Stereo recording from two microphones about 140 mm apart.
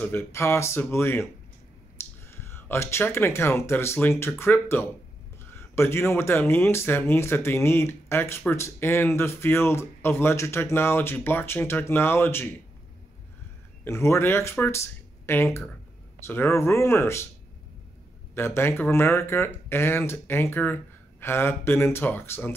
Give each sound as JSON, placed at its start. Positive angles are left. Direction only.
{"t": 0.0, "sound": "speech", "side_deg": 15}
{"t": 2.0, "sound": "clicking", "side_deg": 20}
{"t": 2.3, "sound": "speech", "side_deg": 20}
{"t": 13.8, "sound": "speech", "side_deg": 20}
{"t": 18.3, "sound": "speech", "side_deg": 15}